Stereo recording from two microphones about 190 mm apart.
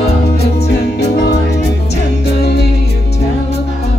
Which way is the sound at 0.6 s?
60° left (ahead or behind).